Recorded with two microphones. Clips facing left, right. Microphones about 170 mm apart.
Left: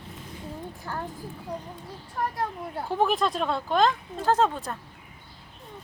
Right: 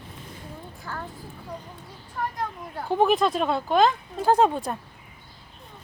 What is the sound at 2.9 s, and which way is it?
Speech, centre (ahead or behind).